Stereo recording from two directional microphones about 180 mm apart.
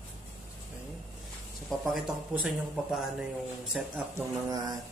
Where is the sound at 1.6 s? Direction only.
Centre (ahead or behind).